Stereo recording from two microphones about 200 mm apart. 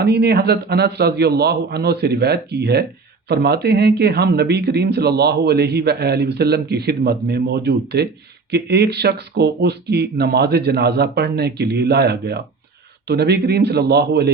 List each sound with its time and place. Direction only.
0.0 s speech: 55° right (ahead or behind)